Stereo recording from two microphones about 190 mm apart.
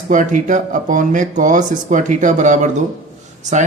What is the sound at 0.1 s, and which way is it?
Speech, 40° right (ahead or behind).